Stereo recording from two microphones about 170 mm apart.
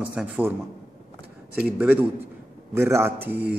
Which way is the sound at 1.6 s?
10° right (ahead or behind).